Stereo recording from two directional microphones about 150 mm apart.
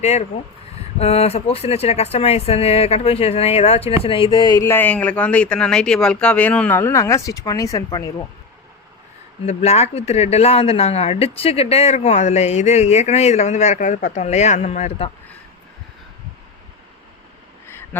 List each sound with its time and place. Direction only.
0.0 s speech: 45° left (ahead or behind); by 4.7 s 25° left (ahead or behind)
4.7 s speech: 10° left (ahead or behind)
9.5 s speech: 45° left (ahead or behind)